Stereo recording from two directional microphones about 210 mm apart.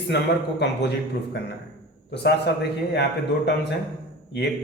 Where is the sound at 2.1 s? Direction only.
55° left (ahead or behind).